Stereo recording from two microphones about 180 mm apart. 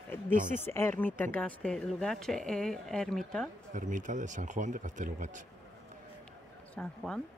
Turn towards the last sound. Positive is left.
turn(degrees=5)  # may be behind; listen again after turning